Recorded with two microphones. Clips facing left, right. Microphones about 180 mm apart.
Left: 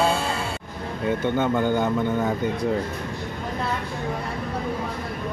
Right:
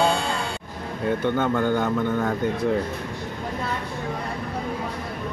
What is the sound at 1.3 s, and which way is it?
Speech, 15° left (ahead or behind).